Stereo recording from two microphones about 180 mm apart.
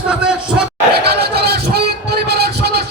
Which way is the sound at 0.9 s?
65° right (ahead or behind).